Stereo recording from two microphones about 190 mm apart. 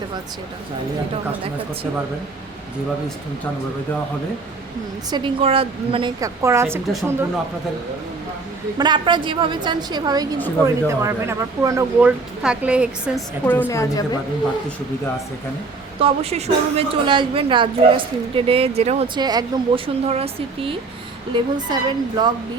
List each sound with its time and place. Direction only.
5.1 s a woman's voice: 30° right (ahead or behind)
6.1 s speech: 15° right (ahead or behind)
8.8 s a woman's voice: 25° right (ahead or behind); by 13.2 s 5° right (ahead or behind)
13.5 s a woman's voice: 10° left (ahead or behind)
16.0 s a woman's voice: 30° right (ahead or behind)